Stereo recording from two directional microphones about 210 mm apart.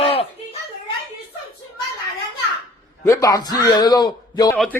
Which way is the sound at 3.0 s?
15° left (ahead or behind).